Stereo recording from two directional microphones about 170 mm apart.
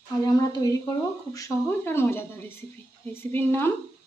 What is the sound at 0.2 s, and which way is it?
Speech, 20° left (ahead or behind).